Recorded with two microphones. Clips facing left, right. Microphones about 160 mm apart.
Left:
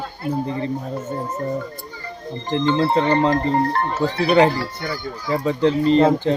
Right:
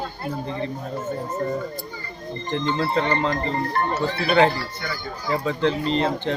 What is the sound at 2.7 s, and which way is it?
Speech, 35° left (ahead or behind).